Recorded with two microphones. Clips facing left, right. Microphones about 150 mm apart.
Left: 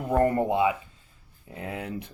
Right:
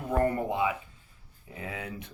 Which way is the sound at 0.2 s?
35° left (ahead or behind).